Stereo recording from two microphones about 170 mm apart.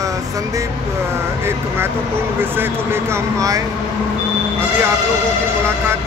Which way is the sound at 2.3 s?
10° right (ahead or behind).